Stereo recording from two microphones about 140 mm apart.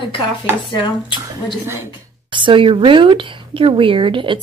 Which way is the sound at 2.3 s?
35° right (ahead or behind).